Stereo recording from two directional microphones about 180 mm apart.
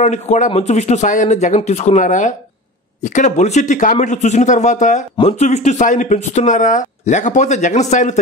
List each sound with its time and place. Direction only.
0.0 s speech: 40° left (ahead or behind)